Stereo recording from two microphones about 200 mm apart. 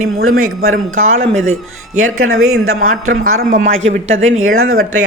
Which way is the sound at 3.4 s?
45° right (ahead or behind).